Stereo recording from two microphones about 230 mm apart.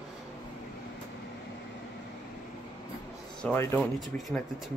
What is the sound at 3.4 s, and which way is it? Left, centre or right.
Speech, centre.